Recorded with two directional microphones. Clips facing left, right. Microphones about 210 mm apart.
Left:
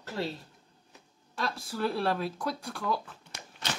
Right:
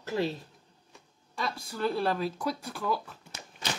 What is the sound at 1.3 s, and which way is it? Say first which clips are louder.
A woman's voice: left 1 dB; centre (ahead or behind).